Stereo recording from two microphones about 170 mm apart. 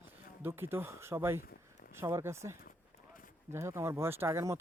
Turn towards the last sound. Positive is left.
turn(degrees=-15)  # may be behind; listen again after turning